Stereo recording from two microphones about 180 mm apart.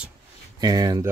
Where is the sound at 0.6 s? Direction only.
20° right (ahead or behind).